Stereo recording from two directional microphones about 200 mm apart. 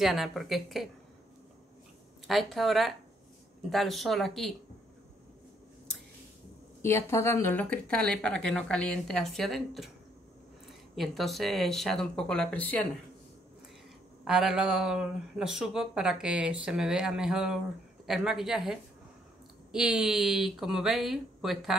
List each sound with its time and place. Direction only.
0.0 s speech: centre (ahead or behind)
2.2 s speech: centre (ahead or behind)
6.8 s speech: 10° left (ahead or behind)
11.0 s speech: centre (ahead or behind)
14.2 s speech: centre (ahead or behind)